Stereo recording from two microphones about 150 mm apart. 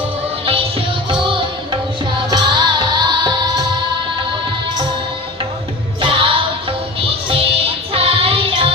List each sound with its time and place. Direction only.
0.4 s music: 40° right (ahead or behind)
6.0 s music: 35° right (ahead or behind)
7.9 s child singing: 40° right (ahead or behind)